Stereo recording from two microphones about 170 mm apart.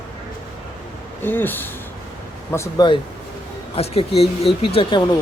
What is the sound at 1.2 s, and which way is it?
Speech, 10° left (ahead or behind).